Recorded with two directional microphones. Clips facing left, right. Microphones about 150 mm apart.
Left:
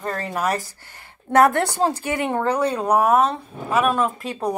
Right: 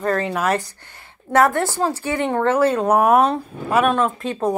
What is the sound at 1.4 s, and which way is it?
Speech, 20° left (ahead or behind).